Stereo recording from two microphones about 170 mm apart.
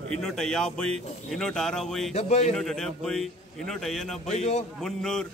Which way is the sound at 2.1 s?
40° left (ahead or behind).